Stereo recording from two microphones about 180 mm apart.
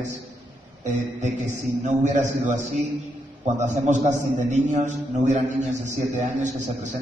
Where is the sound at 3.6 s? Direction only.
40° right (ahead or behind).